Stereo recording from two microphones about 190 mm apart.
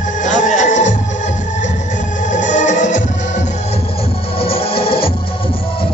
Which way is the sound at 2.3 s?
40° left (ahead or behind).